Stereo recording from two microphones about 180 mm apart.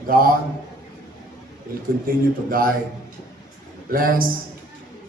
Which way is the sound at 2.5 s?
50° right (ahead or behind).